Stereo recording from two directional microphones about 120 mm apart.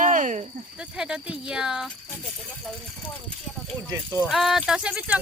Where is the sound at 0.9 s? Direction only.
5° right (ahead or behind).